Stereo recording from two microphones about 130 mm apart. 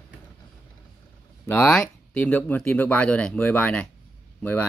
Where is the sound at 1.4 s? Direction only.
10° left (ahead or behind).